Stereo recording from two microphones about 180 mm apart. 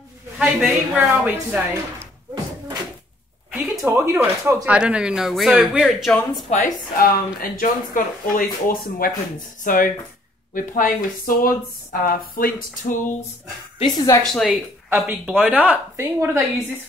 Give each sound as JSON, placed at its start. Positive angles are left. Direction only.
{"t": 0.4, "sound": "speech", "side_deg": -5}
{"t": 3.8, "sound": "speech", "side_deg": -15}
{"t": 6.5, "sound": "speech", "side_deg": 45}
{"t": 13.7, "sound": "a woman's voice", "side_deg": 20}
{"t": 14.2, "sound": "speech", "side_deg": 0}
{"t": 14.5, "sound": "speech", "side_deg": -10}